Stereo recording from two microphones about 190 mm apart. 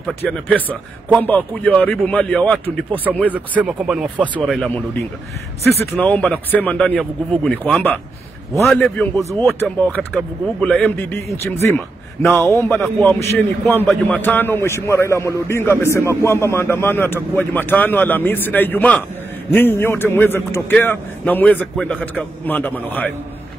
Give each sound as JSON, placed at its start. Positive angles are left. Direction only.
{"t": 0.0, "sound": "a man's voice", "side_deg": 5}
{"t": 2.9, "sound": "a man's voice", "side_deg": -10}
{"t": 5.6, "sound": "speech", "side_deg": -35}
{"t": 5.9, "sound": "a man's voice", "side_deg": 5}
{"t": 12.7, "sound": "a man's voice", "side_deg": 5}